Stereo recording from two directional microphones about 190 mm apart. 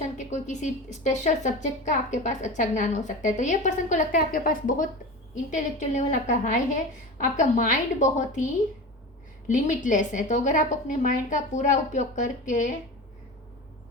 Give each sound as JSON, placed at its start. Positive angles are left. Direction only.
{"t": 0.0, "sound": "a woman's voice", "side_deg": 40}
{"t": 9.5, "sound": "a woman's voice", "side_deg": 40}